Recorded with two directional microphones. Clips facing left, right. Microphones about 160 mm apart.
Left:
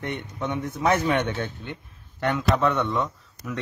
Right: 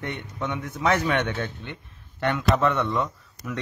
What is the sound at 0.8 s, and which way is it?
Speech, 15° left (ahead or behind).